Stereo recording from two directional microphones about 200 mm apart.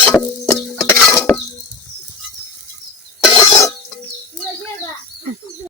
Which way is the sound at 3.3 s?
20° left (ahead or behind).